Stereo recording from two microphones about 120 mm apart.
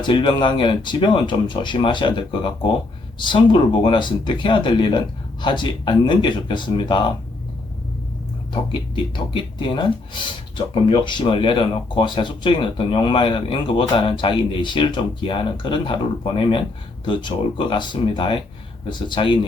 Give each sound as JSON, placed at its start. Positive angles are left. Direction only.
{"t": 0.0, "sound": "speech", "side_deg": 45}
{"t": 9.3, "sound": "speech", "side_deg": 40}